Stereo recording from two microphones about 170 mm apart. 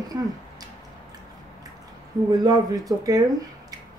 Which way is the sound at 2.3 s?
25° right (ahead or behind).